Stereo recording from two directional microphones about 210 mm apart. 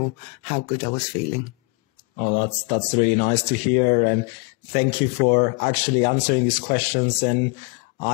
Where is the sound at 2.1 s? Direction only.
40° left (ahead or behind).